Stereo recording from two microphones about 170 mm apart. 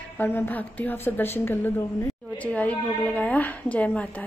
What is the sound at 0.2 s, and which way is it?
A woman's voice, 10° left (ahead or behind).